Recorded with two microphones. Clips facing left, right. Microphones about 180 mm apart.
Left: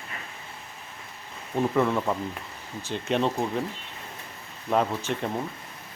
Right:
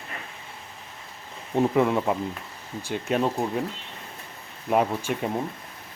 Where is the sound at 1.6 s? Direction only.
15° right (ahead or behind).